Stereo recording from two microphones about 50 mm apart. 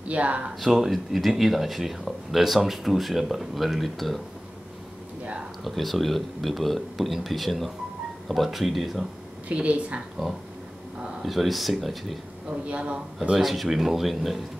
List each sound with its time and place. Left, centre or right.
0.1 s speech: right
0.6 s speech: centre
5.2 s a sound: right
5.6 s speech: centre
9.5 s speech: right
11.2 s speech: centre
12.4 s speech: right
13.4 s speech: centre